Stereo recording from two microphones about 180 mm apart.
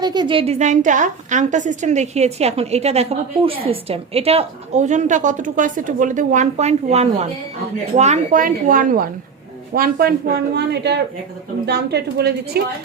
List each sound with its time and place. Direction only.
0.0 s a woman's voice: 25° right (ahead or behind); by 12.6 s 65° right (ahead or behind)